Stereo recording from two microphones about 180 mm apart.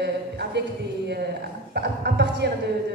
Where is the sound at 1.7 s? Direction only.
65° right (ahead or behind).